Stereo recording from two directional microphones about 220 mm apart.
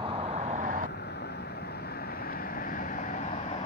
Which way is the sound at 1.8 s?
45° left (ahead or behind).